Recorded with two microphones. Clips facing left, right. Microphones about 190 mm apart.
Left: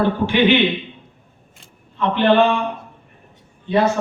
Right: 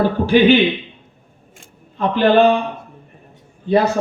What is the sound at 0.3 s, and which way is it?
Speech, 40° right (ahead or behind).